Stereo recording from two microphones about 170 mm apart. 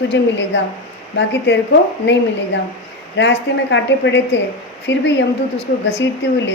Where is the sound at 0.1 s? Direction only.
90° left.